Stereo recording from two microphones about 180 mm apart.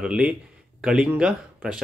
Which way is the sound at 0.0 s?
5° right (ahead or behind).